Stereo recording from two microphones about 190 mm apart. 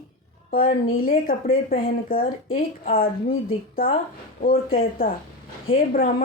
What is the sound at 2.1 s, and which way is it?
Speech, 50° left (ahead or behind).